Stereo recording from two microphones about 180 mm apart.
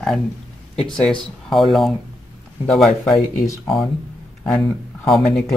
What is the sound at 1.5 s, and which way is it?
Speech, centre (ahead or behind).